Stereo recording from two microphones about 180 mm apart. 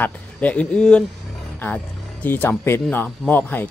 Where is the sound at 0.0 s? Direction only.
10° left (ahead or behind).